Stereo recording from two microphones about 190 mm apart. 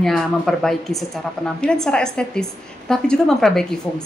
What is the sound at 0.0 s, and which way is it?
Speech, centre (ahead or behind).